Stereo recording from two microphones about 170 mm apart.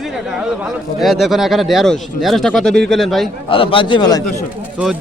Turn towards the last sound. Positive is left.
turn(degrees=25)  # may be behind; listen again after turning